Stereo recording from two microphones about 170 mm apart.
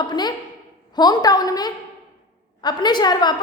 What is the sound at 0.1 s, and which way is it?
A woman's voice, 25° left (ahead or behind).